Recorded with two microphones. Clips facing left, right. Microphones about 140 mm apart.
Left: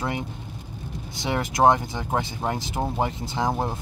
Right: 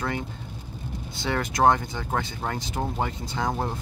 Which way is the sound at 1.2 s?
20° left (ahead or behind).